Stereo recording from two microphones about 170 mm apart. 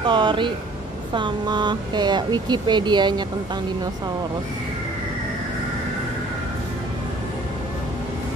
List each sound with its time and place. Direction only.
0.0 s speech: 30° right (ahead or behind)